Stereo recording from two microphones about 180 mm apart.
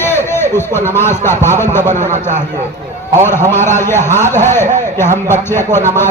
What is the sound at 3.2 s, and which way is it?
A man's voice, 15° left (ahead or behind).